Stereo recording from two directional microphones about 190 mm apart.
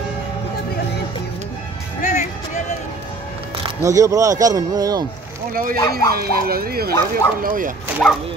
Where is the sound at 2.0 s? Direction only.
40° left (ahead or behind).